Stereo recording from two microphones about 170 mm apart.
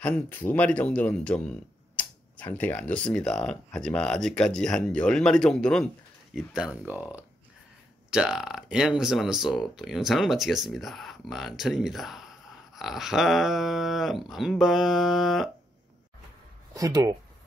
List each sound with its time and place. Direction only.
0.0 s speech: 10° left (ahead or behind)
16.7 s speech: 20° right (ahead or behind)